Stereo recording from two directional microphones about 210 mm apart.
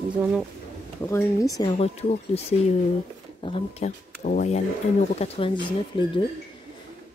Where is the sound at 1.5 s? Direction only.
25° left (ahead or behind).